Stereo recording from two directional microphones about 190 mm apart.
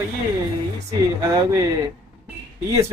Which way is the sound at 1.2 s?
15° right (ahead or behind).